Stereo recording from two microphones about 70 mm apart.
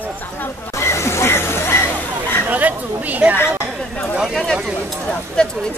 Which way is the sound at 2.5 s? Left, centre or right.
Right.